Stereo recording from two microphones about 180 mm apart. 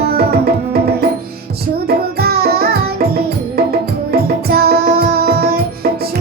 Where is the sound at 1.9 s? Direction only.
60° right (ahead or behind).